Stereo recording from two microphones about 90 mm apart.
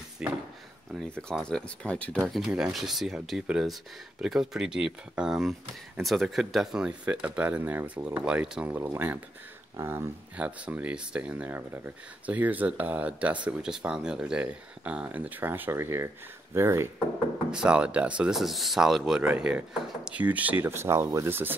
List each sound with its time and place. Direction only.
0.2 s speech: 10° right (ahead or behind)
1.4 s speech: 10° left (ahead or behind)
2.2 s speech: centre (ahead or behind); by 10.0 s 30° right (ahead or behind)
10.3 s speech: 15° right (ahead or behind)
17.5 s speech: 10° right (ahead or behind)
18.3 s speech: centre (ahead or behind); by 21.5 s 25° right (ahead or behind)